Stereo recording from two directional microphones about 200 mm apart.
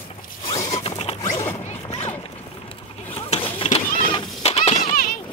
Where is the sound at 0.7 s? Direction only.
30° left (ahead or behind).